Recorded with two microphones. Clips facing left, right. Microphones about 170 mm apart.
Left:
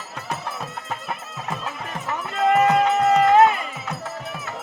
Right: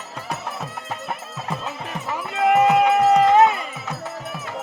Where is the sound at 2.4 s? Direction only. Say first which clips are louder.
Right 1 dB; 15° right (ahead or behind).